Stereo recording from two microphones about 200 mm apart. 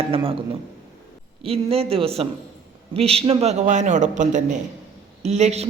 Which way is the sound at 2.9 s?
30° right (ahead or behind).